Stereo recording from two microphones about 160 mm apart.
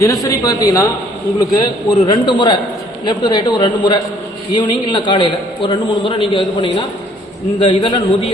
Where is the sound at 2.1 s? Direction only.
30° left (ahead or behind).